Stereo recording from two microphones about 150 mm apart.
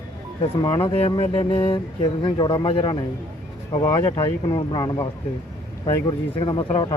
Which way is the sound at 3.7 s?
15° left (ahead or behind).